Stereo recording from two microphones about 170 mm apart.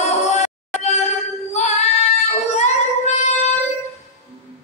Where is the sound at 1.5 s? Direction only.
40° left (ahead or behind).